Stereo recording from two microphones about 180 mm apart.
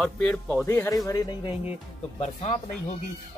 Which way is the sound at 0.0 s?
5° left (ahead or behind).